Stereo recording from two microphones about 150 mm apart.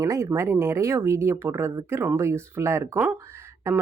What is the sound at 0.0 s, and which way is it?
Speech, 20° right (ahead or behind).